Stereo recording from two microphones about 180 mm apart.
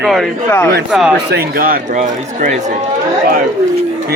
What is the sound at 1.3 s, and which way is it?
Speech, 55° right (ahead or behind).